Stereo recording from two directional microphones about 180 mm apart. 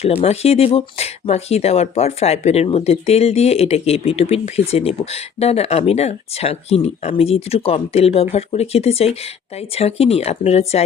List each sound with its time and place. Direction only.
0.0 s speech: 35° left (ahead or behind)